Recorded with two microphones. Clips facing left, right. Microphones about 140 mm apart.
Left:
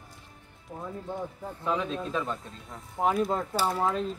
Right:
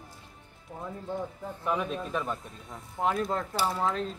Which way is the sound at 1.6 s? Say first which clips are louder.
Left 1 dB; 10° right (ahead or behind).